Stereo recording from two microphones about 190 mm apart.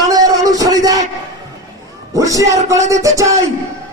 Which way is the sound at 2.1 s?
15° right (ahead or behind).